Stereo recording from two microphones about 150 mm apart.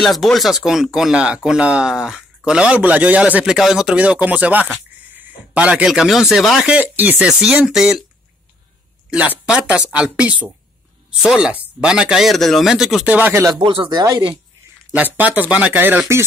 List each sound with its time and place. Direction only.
0.0 s speech: centre (ahead or behind)
9.1 s speech: 10° right (ahead or behind)
13.1 s speech: 15° right (ahead or behind)
13.6 s speech: 35° right (ahead or behind)
14.9 s speech: 10° right (ahead or behind)